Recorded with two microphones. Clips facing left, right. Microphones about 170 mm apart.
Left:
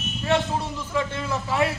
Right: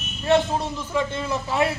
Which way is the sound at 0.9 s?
15° right (ahead or behind).